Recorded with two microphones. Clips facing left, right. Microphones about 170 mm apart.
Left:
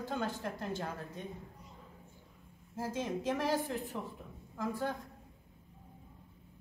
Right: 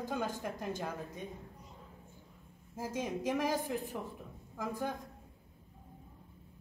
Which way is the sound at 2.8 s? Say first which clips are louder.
Left 1 dB; 15° right (ahead or behind).